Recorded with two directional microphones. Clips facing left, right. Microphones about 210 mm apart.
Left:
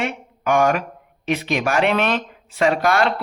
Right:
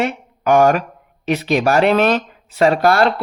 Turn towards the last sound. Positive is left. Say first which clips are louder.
# right 4 dB
turn(degrees=-40)  # may be behind; listen again after turning